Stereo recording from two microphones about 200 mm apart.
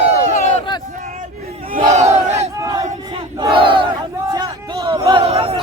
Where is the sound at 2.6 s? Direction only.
15° right (ahead or behind).